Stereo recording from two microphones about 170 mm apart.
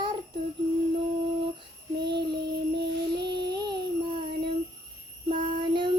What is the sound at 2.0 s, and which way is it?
Child singing, 80° right.